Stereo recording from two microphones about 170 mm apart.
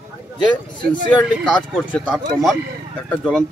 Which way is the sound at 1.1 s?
5° left (ahead or behind).